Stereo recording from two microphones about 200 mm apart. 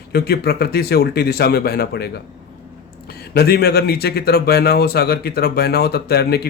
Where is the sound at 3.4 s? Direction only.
50° left (ahead or behind).